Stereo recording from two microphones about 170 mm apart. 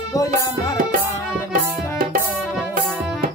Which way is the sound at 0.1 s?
20° left (ahead or behind).